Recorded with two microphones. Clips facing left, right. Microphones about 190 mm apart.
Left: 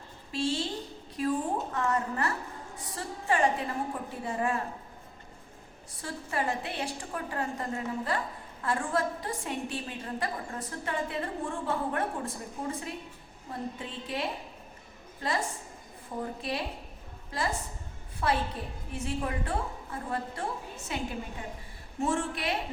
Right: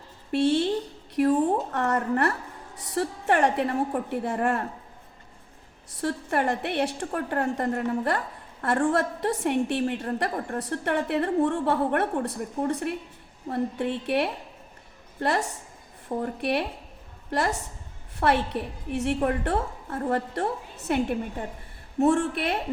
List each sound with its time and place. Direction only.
0.3 s a woman's voice: 60° right (ahead or behind)
1.1 s a sound: 65° right (ahead or behind)
2.9 s a woman's voice: 65° right (ahead or behind)
6.0 s a woman's voice: 65° right (ahead or behind)